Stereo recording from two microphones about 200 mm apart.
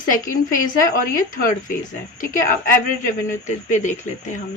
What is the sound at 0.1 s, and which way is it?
A woman's voice, 40° left (ahead or behind).